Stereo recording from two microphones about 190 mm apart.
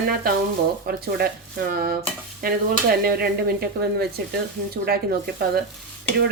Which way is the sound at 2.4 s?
50° right (ahead or behind).